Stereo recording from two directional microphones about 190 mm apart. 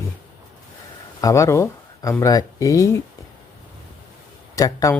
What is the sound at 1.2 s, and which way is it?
Speech, 15° left (ahead or behind).